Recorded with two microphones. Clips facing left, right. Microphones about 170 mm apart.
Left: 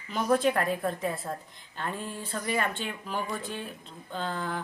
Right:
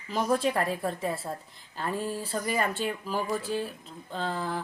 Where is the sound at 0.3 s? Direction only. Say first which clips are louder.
Left 3 dB; centre (ahead or behind).